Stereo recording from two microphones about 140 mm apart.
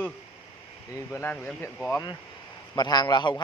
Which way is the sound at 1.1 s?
15° left (ahead or behind).